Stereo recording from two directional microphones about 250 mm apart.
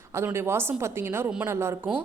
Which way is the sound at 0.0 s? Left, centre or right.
Centre.